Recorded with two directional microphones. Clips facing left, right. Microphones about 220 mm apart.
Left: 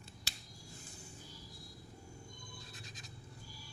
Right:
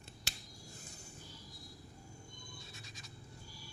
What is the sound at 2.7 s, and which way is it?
Scratch, centre (ahead or behind).